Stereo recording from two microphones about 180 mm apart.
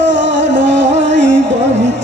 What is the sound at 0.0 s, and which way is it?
Music, 80° right.